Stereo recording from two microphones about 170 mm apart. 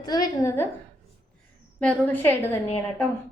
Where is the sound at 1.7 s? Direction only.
10° left (ahead or behind).